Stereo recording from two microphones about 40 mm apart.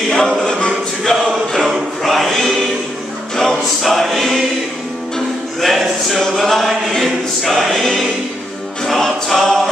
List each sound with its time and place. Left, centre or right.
0.1 s choir: centre
3.8 s choir: centre
5.6 s choir: centre